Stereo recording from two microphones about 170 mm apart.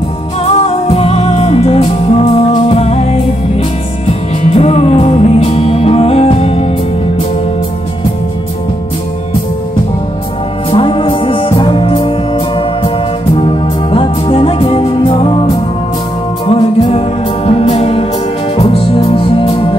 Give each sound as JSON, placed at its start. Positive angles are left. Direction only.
{"t": 0.5, "sound": "music", "side_deg": 40}
{"t": 10.7, "sound": "music", "side_deg": 30}
{"t": 13.4, "sound": "music", "side_deg": 30}